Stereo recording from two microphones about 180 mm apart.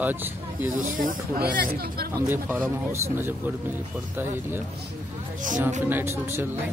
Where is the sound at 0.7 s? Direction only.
50° right (ahead or behind).